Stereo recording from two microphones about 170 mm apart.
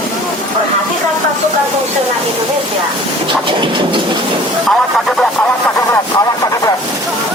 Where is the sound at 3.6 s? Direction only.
30° right (ahead or behind).